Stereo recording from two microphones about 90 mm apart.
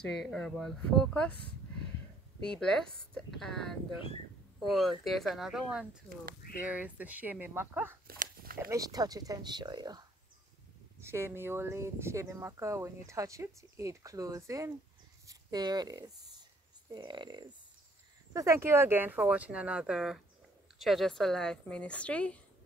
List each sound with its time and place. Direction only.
0.0 s speech: 5° left (ahead or behind)
2.6 s speech: 5° left (ahead or behind); by 8.0 s 25° right (ahead or behind)
8.7 s speech: 45° right (ahead or behind)
11.0 s speech: 30° right (ahead or behind)
15.2 s speech: 50° right (ahead or behind)
16.9 s speech: 60° right (ahead or behind)
18.3 s speech: 35° right (ahead or behind); by 22.4 s 15° left (ahead or behind)